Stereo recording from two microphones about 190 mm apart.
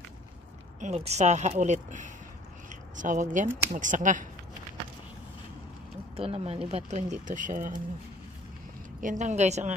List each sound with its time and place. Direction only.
0.7 s speech: 35° right (ahead or behind)
6.1 s speech: 30° right (ahead or behind)
9.0 s speech: 40° right (ahead or behind)